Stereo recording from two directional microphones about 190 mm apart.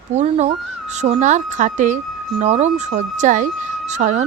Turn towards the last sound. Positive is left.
turn(degrees=-40)  # may be behind; listen again after turning